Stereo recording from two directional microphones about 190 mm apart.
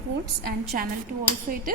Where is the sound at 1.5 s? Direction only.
45° right (ahead or behind).